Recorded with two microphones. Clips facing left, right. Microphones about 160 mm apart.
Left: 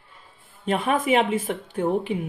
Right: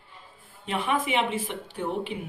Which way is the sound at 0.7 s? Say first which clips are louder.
Left 6 dB; 45° left (ahead or behind).